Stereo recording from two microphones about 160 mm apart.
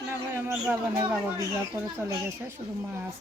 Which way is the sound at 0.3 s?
15° right (ahead or behind).